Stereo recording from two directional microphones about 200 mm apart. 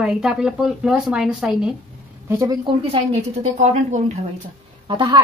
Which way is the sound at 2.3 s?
15° right (ahead or behind).